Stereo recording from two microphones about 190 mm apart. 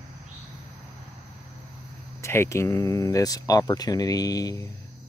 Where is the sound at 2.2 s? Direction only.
15° left (ahead or behind).